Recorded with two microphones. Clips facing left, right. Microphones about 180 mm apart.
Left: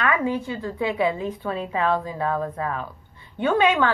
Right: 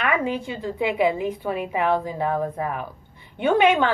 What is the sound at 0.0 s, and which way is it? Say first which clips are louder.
A woman's voice: left 1 dB; 20° right (ahead or behind).